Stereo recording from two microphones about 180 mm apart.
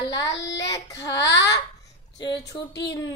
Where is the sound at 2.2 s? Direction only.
20° left (ahead or behind).